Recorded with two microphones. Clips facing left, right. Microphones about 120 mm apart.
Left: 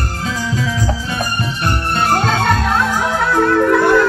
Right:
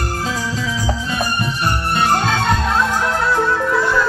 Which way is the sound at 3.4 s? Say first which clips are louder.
Left 5 dB; 60° left (ahead or behind).